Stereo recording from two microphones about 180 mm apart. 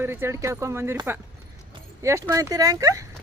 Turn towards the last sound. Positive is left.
turn(degrees=-15)  # may be behind; listen again after turning